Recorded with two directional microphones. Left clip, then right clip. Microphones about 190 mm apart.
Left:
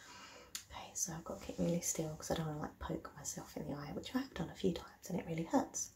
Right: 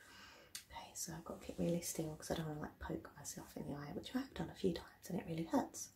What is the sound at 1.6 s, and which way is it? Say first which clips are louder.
Speech: left 2 dB; 5° left (ahead or behind).